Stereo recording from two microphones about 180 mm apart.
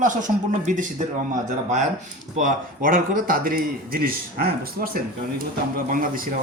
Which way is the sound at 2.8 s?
50° right (ahead or behind).